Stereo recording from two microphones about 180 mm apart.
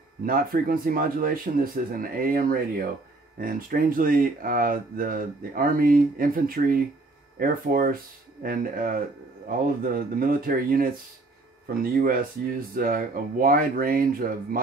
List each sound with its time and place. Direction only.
0.2 s speech: 55° right (ahead or behind)